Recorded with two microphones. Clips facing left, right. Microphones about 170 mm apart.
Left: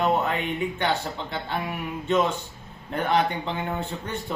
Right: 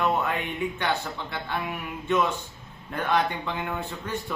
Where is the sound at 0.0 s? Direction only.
25° left (ahead or behind).